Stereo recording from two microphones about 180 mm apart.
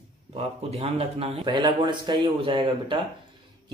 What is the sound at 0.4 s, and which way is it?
Speech, 35° right (ahead or behind).